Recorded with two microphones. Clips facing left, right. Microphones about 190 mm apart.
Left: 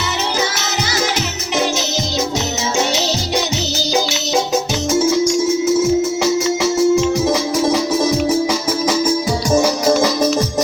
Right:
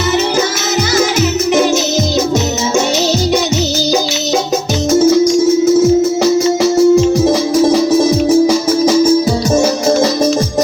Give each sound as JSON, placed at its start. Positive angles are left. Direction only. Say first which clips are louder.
{"t": 4.9, "sound": "music", "louder": "right 6 dB", "side_deg": -40}